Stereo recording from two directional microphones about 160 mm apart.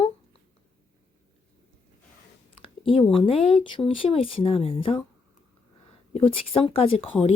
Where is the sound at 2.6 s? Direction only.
35° left (ahead or behind).